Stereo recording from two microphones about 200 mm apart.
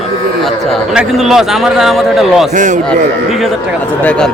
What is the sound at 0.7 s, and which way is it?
A man's voice, centre (ahead or behind).